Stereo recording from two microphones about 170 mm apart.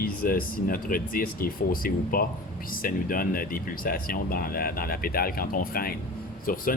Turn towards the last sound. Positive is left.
turn(degrees=55)  # may be behind; listen again after turning